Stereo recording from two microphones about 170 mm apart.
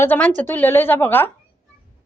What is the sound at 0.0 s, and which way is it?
A woman's voice, 10° left (ahead or behind).